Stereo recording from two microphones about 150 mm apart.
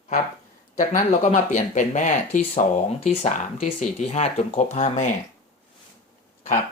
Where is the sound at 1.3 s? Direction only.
55° left (ahead or behind).